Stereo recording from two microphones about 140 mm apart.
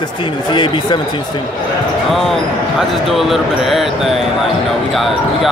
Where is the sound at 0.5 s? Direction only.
35° left (ahead or behind).